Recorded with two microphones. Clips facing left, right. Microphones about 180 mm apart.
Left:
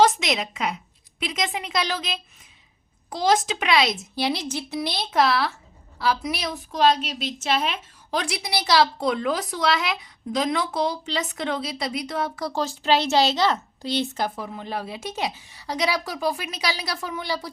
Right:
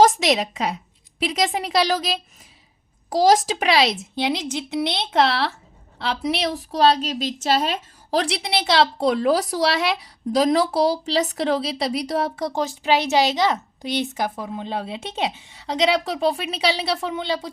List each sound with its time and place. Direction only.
0.0 s a woman's voice: 35° right (ahead or behind)
4.1 s a woman's voice: 20° right (ahead or behind)